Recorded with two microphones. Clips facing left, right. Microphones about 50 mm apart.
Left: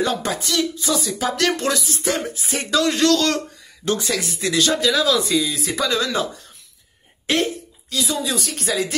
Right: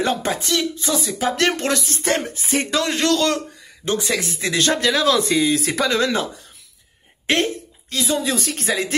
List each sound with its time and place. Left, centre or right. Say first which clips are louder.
0.0 s speech: right 1 dB; right
5.5 s speech: right 6 dB; right
5.8 s speech: left 2 dB; right
7.9 s speech: right 2 dB; right